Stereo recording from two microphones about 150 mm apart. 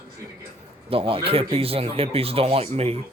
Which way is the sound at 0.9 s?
40° right (ahead or behind).